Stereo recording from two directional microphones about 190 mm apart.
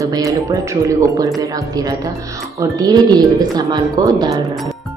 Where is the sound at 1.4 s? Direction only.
20° right (ahead or behind).